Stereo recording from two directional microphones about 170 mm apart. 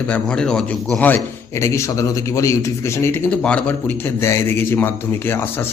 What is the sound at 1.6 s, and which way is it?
A man's voice, 15° left (ahead or behind).